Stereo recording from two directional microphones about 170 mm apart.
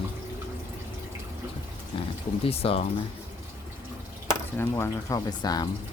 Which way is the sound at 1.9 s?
30° left (ahead or behind).